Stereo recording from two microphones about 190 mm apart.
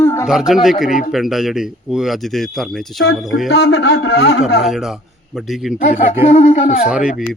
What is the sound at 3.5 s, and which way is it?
Speech, 60° left (ahead or behind).